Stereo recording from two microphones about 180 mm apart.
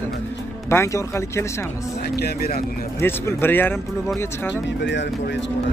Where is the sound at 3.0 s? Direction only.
10° left (ahead or behind).